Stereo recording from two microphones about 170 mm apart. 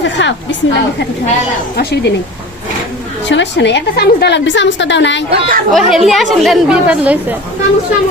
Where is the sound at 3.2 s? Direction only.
90° left.